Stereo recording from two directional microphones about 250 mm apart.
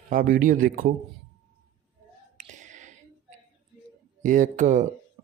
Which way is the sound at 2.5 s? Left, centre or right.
Right.